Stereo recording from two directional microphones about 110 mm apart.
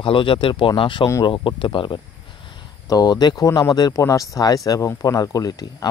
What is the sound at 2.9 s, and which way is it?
Speech, 40° left (ahead or behind).